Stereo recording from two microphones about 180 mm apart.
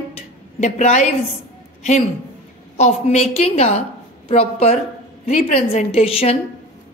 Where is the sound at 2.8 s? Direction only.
40° left (ahead or behind).